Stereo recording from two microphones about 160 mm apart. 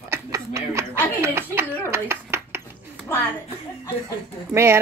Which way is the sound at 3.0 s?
15° left (ahead or behind).